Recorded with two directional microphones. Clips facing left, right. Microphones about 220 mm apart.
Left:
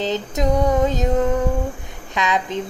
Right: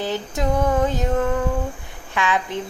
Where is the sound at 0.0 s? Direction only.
20° left (ahead or behind).